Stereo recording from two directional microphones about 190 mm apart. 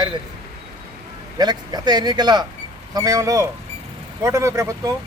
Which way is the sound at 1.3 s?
20° right (ahead or behind).